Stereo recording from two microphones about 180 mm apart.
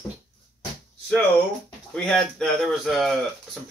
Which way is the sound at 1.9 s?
5° left (ahead or behind).